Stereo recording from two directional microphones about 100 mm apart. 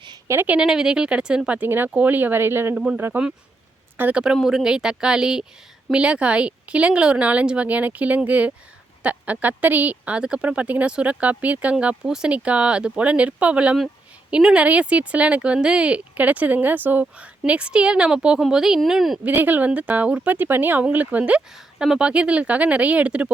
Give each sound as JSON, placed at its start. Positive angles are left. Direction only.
{"t": 0.3, "sound": "speech", "side_deg": -20}
{"t": 2.7, "sound": "speech", "side_deg": -10}
{"t": 19.2, "sound": "speech", "side_deg": -15}